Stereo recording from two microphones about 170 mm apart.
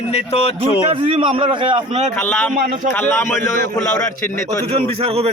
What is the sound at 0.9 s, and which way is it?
A man's voice, 30° right (ahead or behind).